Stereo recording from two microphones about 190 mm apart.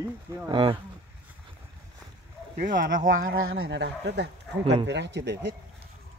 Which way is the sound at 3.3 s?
90° right.